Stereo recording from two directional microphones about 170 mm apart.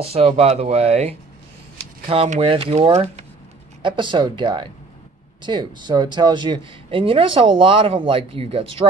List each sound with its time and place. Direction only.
0.0 s speech: 35° right (ahead or behind)